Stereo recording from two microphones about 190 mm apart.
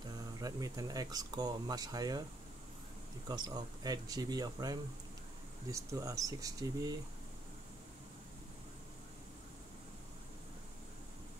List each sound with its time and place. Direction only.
0.4 s speech: 20° right (ahead or behind)
3.3 s speech: 20° right (ahead or behind)